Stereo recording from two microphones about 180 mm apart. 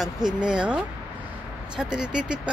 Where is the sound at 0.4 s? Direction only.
5° right (ahead or behind).